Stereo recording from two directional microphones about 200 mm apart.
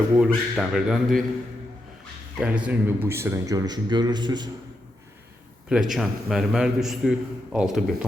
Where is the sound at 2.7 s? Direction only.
10° right (ahead or behind).